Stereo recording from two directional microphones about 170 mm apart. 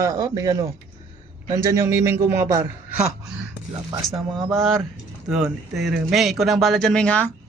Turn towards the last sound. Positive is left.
turn(degrees=10)  # may be behind; listen again after turning